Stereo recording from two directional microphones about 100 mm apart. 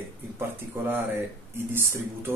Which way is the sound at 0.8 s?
25° right (ahead or behind).